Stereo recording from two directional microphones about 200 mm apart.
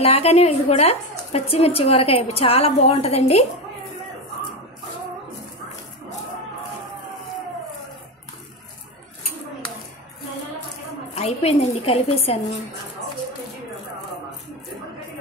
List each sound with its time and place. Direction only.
0.0 s a woman's voice: 30° left (ahead or behind)
11.1 s a woman's voice: 30° left (ahead or behind)